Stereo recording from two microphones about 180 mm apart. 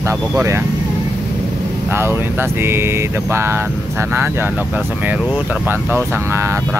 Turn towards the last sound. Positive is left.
turn(degrees=-15)  # may be behind; listen again after turning